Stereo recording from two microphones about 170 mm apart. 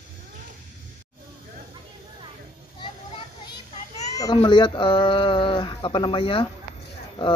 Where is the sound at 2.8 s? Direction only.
25° left (ahead or behind).